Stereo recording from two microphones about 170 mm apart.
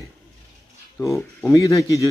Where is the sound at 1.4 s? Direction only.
20° left (ahead or behind).